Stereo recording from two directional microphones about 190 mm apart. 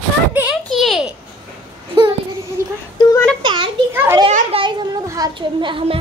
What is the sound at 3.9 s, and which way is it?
Children playing, 10° right (ahead or behind).